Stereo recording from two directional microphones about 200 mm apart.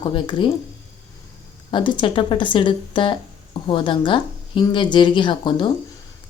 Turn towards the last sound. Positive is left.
turn(degrees=25)  # may be behind; listen again after turning